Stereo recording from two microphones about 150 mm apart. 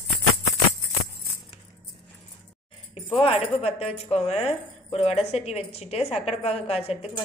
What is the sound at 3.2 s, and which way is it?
Speech, 40° left (ahead or behind).